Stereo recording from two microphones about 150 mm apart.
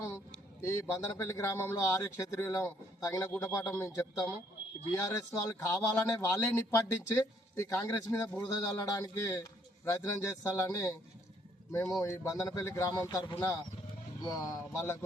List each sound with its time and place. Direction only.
0.6 s a man's voice: 20° left (ahead or behind)